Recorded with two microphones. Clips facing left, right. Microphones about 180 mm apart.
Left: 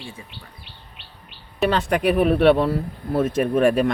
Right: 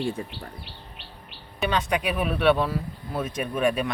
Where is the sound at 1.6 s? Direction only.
60° left (ahead or behind).